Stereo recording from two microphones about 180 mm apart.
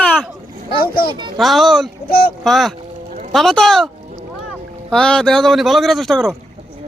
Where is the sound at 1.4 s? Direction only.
Centre (ahead or behind).